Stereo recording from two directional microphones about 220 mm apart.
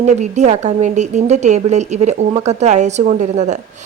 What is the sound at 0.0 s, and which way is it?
A woman's voice, 30° right (ahead or behind).